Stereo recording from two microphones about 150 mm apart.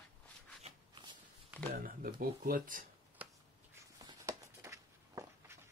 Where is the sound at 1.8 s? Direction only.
70° right (ahead or behind).